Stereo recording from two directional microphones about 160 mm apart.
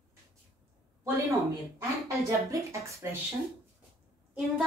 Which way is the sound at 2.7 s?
20° right (ahead or behind).